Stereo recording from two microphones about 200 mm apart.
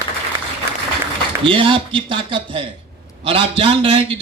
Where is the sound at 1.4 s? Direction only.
25° right (ahead or behind).